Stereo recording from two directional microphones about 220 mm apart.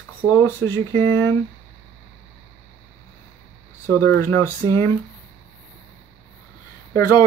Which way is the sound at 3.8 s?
15° left (ahead or behind).